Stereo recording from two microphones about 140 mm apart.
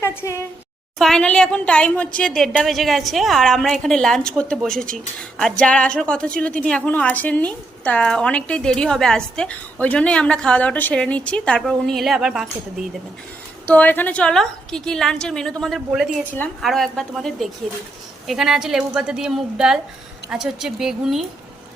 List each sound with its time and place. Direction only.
0.0 s a sound: 20° left (ahead or behind)
0.9 s a woman's voice: 5° left (ahead or behind)
13.7 s a woman's voice: 10° left (ahead or behind)